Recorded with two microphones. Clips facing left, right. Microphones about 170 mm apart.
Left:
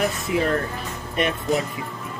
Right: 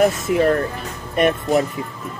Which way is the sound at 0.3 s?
50° right (ahead or behind).